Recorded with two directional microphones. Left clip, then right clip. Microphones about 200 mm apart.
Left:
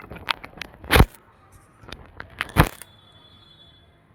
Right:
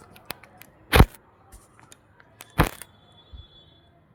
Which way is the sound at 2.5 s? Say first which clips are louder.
Left 3 dB; centre (ahead or behind).